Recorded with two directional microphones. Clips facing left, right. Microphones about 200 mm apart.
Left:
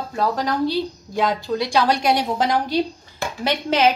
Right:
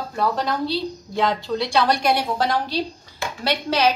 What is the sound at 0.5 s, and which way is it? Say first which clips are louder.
A woman's voice: left 3 dB; 15° left (ahead or behind).